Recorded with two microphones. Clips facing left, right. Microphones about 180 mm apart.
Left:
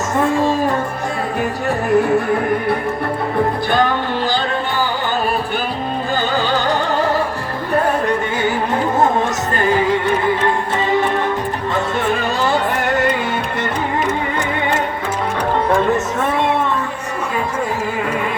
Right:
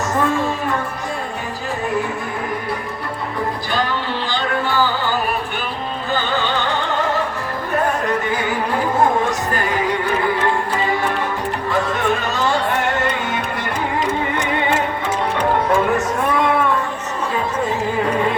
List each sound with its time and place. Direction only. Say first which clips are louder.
3.7 s music: left 5 dB; 55° left (ahead or behind)
6.1 s music: left 2 dB; 40° left (ahead or behind)